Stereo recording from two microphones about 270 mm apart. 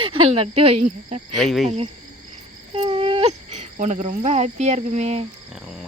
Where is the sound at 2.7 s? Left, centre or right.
Right.